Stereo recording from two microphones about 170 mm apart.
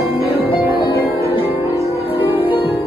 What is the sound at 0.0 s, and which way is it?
Music, 15° right (ahead or behind).